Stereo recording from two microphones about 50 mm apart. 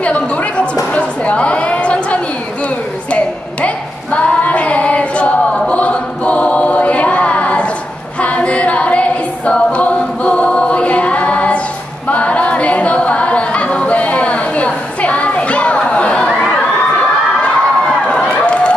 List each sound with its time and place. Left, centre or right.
0.0 s a sound: left
3.6 s female singing: left
8.2 s a capella: left
17.4 s crowd: left
18.3 s run: left